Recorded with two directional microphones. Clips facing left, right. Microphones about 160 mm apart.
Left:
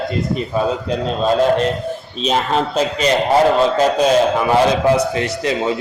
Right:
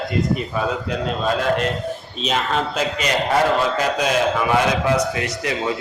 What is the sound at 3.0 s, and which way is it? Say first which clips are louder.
A man's voice: left 5 dB; 30° left (ahead or behind).